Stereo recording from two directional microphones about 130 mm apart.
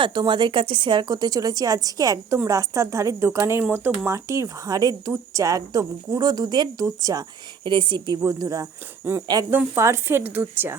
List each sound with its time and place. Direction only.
0.0 s a woman's voice: 35° right (ahead or behind)
8.2 s a woman's voice: 25° right (ahead or behind)
9.5 s speech: 20° right (ahead or behind)